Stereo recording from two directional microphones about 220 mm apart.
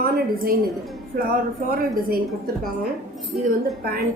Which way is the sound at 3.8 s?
45° right (ahead or behind).